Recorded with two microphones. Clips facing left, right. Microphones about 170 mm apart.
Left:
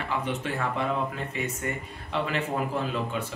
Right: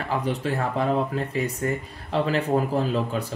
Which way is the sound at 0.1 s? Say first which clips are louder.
Right 5 dB; 35° right (ahead or behind).